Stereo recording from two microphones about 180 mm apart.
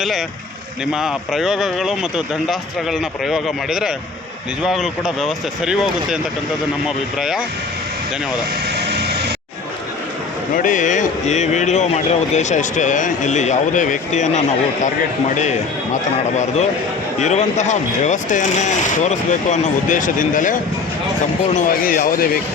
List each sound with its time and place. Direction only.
0.9 s speech: centre (ahead or behind)
10.5 s speech: 45° left (ahead or behind)
16.3 s speech: 40° left (ahead or behind)